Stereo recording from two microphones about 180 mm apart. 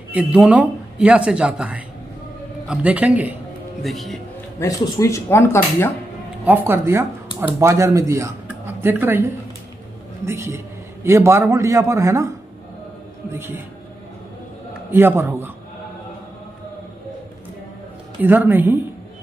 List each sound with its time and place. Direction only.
0.1 s a man's voice: 5° right (ahead or behind)
4.6 s speech: 15° left (ahead or behind)
6.4 s speech: 10° right (ahead or behind)
10.2 s speech: 15° right (ahead or behind)
13.3 s speech: 15° right (ahead or behind)
14.9 s speech: 15° right (ahead or behind)
18.2 s speech: 10° right (ahead or behind)